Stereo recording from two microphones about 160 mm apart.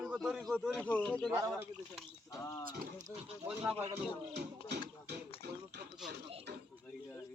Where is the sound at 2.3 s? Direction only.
20° left (ahead or behind).